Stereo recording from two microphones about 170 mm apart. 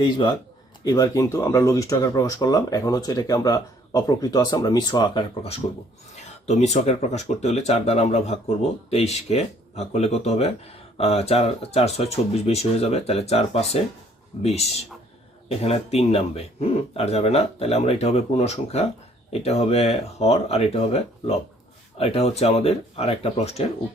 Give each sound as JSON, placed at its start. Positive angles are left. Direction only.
{"t": 0.0, "sound": "speech", "side_deg": 30}